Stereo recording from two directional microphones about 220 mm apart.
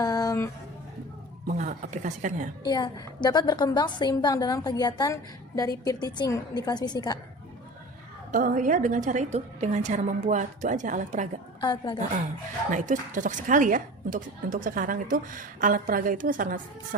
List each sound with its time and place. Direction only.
0.0 s a sound: 15° left (ahead or behind)
1.5 s a woman's voice: 35° right (ahead or behind)
2.6 s a woman's voice: 20° left (ahead or behind)
8.3 s a woman's voice: 35° right (ahead or behind)
11.6 s a woman's voice: 20° left (ahead or behind)
12.7 s a woman's voice: 35° right (ahead or behind)